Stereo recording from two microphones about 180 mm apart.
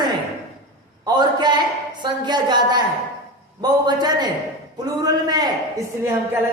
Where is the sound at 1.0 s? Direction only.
25° right (ahead or behind).